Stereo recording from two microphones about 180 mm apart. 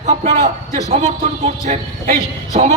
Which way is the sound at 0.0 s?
40° right (ahead or behind).